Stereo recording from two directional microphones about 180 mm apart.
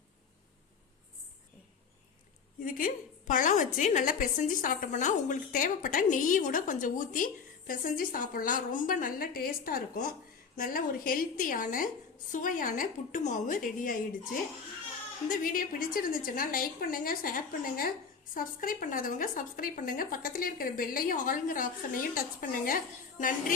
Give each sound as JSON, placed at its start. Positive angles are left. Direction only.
{"t": 2.6, "sound": "a woman's voice", "side_deg": 50}
{"t": 15.3, "sound": "a woman's voice", "side_deg": 50}